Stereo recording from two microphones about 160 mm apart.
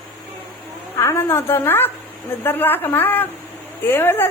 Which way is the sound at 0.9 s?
15° left (ahead or behind).